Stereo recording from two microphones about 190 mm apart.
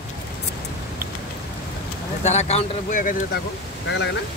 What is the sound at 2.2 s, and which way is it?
A man's voice, 35° left (ahead or behind).